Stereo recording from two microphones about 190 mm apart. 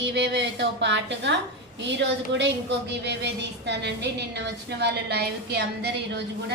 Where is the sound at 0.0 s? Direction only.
65° right (ahead or behind).